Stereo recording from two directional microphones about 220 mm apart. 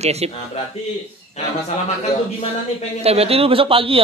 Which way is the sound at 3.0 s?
25° right (ahead or behind).